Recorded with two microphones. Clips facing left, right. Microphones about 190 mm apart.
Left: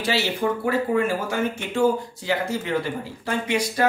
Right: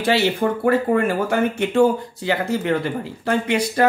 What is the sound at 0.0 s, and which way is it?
Speech, 55° right (ahead or behind).